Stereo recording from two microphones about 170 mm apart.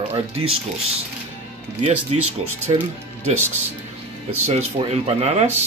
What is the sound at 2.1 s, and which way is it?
Speech, 35° right (ahead or behind).